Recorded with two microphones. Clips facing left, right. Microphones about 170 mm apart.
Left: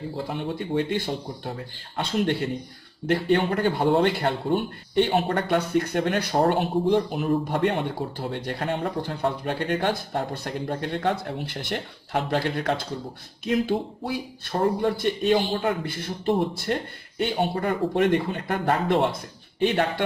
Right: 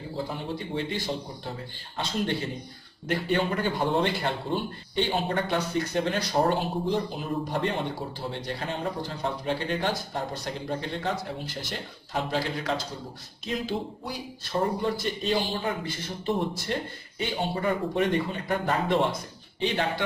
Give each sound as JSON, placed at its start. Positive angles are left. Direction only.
{"t": 0.7, "sound": "a man's voice", "side_deg": 55}
{"t": 3.1, "sound": "a man's voice", "side_deg": 60}